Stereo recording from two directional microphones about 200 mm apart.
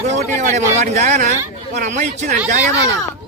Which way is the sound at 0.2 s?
35° right (ahead or behind).